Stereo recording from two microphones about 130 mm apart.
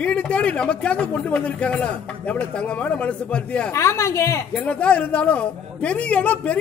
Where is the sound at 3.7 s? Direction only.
20° left (ahead or behind).